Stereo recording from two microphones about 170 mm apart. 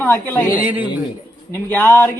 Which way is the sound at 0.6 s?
10° right (ahead or behind).